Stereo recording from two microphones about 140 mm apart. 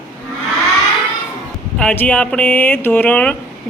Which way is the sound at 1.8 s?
10° left (ahead or behind).